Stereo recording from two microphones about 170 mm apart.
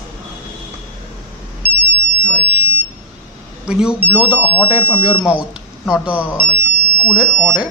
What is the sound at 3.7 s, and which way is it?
Speech, 5° right (ahead or behind).